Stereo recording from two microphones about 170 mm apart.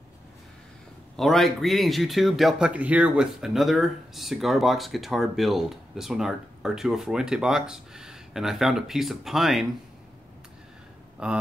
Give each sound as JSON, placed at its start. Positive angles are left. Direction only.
{"t": 1.1, "sound": "speech", "side_deg": 0}
{"t": 11.2, "sound": "speech", "side_deg": -5}